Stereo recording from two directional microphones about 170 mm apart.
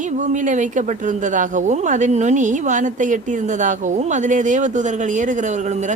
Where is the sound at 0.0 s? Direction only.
45° right (ahead or behind).